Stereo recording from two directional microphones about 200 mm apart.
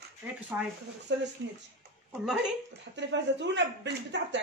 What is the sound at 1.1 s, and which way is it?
Speech, 60° right (ahead or behind).